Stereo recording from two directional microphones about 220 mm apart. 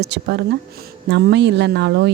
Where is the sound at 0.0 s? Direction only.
50° right (ahead or behind).